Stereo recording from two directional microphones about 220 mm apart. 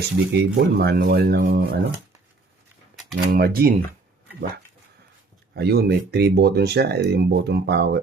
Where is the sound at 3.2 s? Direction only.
45° right (ahead or behind).